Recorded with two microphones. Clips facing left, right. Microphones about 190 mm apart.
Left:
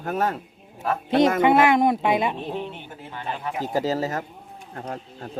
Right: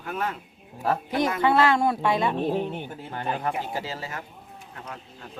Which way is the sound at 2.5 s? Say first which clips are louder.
Right 4 dB; 45° right (ahead or behind).